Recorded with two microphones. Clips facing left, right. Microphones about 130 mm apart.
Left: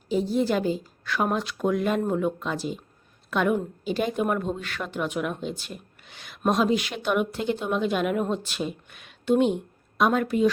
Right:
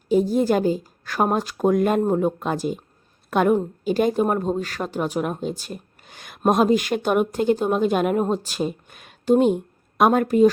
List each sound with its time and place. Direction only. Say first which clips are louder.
0.1 s a woman's voice: right 5 dB; 45° right (ahead or behind)